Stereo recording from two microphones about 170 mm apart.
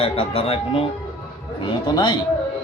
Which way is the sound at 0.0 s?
35° left (ahead or behind).